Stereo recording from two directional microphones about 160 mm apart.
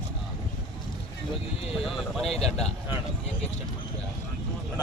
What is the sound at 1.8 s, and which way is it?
Speech, centre (ahead or behind).